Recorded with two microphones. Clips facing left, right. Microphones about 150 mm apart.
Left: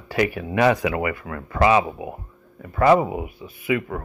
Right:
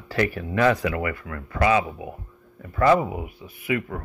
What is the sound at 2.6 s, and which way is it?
Speech, 60° left (ahead or behind).